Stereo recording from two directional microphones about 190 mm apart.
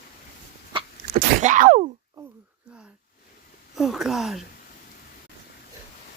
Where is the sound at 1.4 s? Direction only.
40° right (ahead or behind).